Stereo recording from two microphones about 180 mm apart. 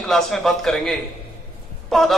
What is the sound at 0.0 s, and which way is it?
A man's voice, centre (ahead or behind).